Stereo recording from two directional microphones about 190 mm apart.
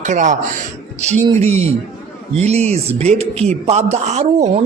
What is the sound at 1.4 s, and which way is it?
A man's voice, 35° right (ahead or behind).